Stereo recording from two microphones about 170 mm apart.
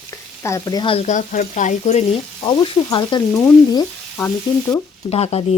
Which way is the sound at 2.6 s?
25° left (ahead or behind).